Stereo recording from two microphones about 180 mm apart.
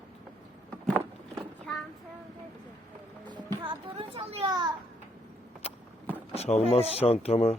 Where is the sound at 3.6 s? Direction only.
30° right (ahead or behind).